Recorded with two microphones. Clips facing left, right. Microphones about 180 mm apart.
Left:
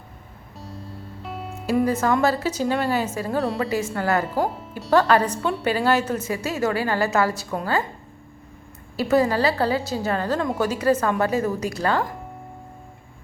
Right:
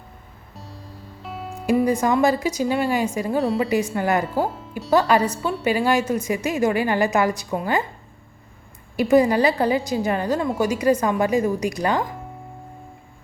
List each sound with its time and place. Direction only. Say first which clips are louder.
0.5 s music: left 3 dB; centre (ahead or behind)
1.8 s a woman's voice: right 1 dB; 15° right (ahead or behind)
9.0 s a woman's voice: right 3 dB; 15° right (ahead or behind)